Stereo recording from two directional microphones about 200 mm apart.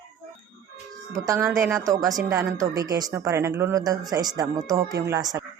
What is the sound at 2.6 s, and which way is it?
Speech, 20° right (ahead or behind).